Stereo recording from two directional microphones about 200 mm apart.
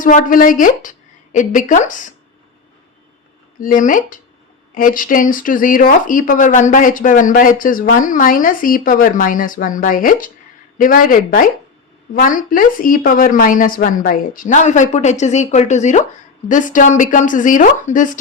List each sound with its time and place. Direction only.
0.0 s speech: 40° left (ahead or behind)
3.6 s a woman's voice: 40° left (ahead or behind)